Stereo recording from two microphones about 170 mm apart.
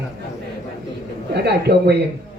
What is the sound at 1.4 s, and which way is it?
Speech, 75° right (ahead or behind).